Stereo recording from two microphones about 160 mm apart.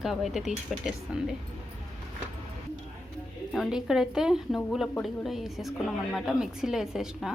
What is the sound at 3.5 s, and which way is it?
A woman's voice, centre (ahead or behind).